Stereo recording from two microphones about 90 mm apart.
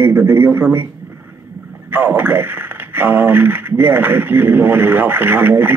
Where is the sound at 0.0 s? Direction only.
25° right (ahead or behind).